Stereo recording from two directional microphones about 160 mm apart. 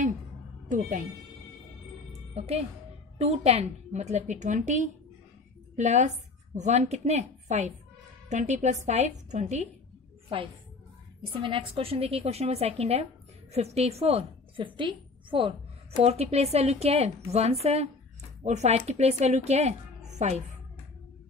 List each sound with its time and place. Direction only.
0.7 s speech: 55° right (ahead or behind)
2.3 s a woman's voice: 40° right (ahead or behind)
11.4 s a woman's voice: 35° right (ahead or behind)